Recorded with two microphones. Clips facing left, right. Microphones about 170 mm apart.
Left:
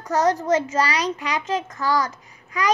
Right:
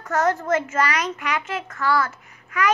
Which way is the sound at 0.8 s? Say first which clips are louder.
Left 1 dB; 35° left (ahead or behind).